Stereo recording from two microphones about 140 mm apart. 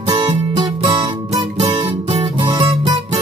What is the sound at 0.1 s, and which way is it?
Music, 35° right (ahead or behind).